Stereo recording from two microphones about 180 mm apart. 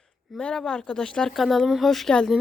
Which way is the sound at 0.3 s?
5° left (ahead or behind).